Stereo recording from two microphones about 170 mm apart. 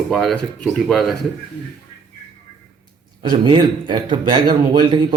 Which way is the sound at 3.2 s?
30° right (ahead or behind).